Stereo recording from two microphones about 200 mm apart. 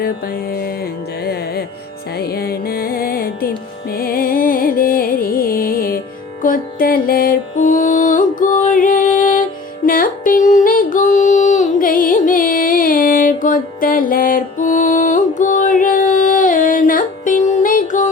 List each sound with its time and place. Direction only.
0.0 s music: 50° left (ahead or behind)